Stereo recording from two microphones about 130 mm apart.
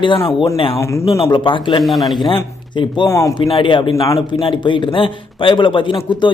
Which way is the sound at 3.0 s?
20° left (ahead or behind).